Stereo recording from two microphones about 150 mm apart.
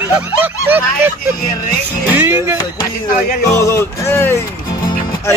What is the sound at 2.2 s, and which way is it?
Speech, 15° right (ahead or behind).